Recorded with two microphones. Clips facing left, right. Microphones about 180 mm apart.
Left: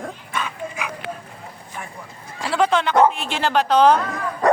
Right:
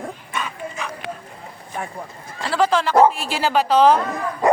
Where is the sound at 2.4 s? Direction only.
Centre (ahead or behind).